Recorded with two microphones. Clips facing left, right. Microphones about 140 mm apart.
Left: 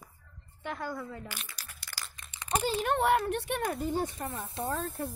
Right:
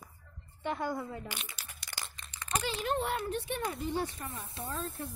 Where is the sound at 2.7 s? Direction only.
50° left (ahead or behind).